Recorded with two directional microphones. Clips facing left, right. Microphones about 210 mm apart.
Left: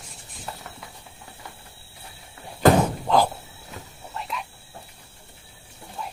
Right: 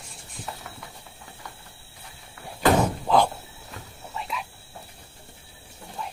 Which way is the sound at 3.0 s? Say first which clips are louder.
Even; centre (ahead or behind).